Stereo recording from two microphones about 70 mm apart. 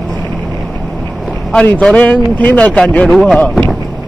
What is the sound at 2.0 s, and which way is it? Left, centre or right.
Speech, left.